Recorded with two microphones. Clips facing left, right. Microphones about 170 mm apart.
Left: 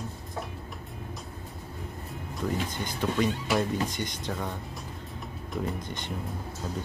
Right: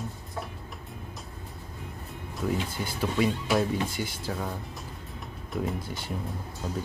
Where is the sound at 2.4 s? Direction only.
5° right (ahead or behind).